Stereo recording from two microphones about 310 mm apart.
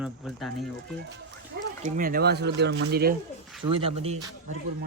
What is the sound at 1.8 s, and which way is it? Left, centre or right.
Speech, right.